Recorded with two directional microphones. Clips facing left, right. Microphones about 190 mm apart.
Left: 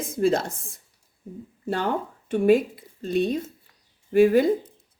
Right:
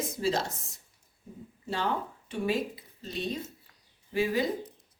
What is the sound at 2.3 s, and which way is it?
Speech, 55° left (ahead or behind).